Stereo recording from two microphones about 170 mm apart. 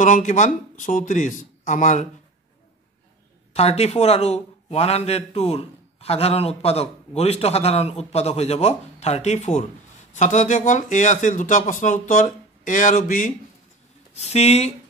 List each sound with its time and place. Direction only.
0.0 s speech: 45° left (ahead or behind)
3.5 s a man's voice: 40° left (ahead or behind)